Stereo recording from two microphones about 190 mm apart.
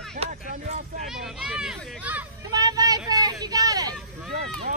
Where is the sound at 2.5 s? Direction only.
20° right (ahead or behind).